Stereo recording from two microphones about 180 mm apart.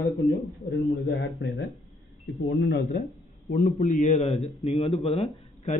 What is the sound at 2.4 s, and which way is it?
Speech, 85° left.